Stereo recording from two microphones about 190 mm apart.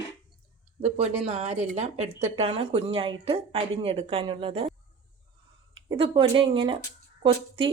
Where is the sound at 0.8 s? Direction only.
35° right (ahead or behind).